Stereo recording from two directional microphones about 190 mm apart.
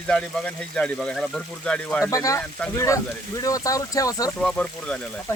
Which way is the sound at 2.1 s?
15° left (ahead or behind).